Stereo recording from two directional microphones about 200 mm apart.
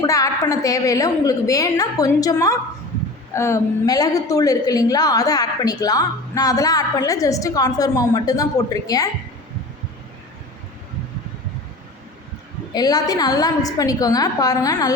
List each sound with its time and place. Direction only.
0.0 s a woman's voice: 15° left (ahead or behind)
12.7 s a woman's voice: 20° left (ahead or behind)